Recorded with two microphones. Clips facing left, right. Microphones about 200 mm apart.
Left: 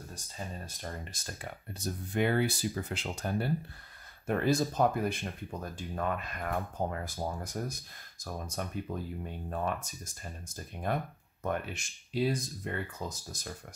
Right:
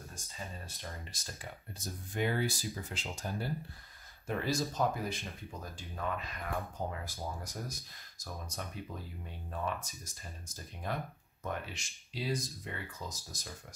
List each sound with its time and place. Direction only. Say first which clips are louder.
0.7 s speech: left 5 dB; 50° left (ahead or behind)